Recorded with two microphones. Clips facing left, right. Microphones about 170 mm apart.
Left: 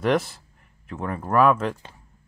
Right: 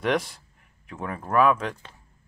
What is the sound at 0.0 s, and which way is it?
Speech, centre (ahead or behind).